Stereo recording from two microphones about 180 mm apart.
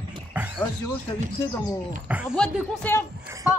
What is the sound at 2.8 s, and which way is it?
Speech, 5° left (ahead or behind).